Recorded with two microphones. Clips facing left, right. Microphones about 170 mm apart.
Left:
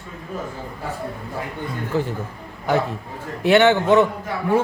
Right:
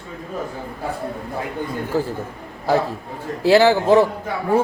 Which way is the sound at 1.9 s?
35° right (ahead or behind).